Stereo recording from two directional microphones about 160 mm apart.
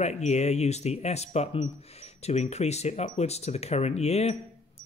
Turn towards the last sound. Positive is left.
turn(degrees=40)  # may be behind; listen again after turning